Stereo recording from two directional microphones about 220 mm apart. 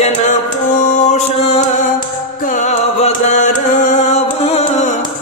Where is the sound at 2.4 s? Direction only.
35° left (ahead or behind).